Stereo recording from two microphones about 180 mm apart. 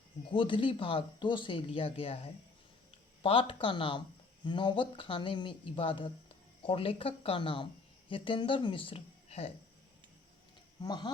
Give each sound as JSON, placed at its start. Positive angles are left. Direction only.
{"t": 0.3, "sound": "speech", "side_deg": 30}
{"t": 10.8, "sound": "speech", "side_deg": 25}